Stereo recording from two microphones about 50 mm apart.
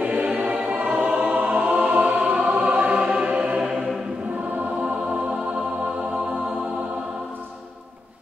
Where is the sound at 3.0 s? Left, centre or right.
Right.